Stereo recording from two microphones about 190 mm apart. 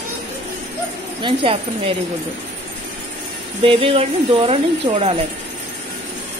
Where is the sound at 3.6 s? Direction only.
30° right (ahead or behind).